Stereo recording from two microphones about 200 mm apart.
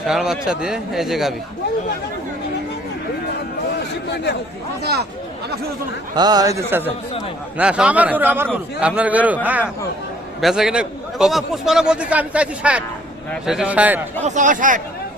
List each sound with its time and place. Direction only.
0.1 s a man's voice: centre (ahead or behind)
4.1 s speech: 55° left (ahead or behind)
4.8 s speech: 55° right (ahead or behind)
6.1 s a man's voice: 20° right (ahead or behind)
14.2 s speech: 35° right (ahead or behind)